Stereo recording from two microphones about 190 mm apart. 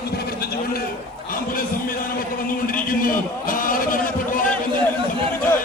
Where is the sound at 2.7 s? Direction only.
45° left (ahead or behind).